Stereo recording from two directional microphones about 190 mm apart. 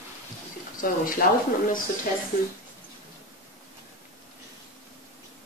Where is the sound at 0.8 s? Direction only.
50° left (ahead or behind).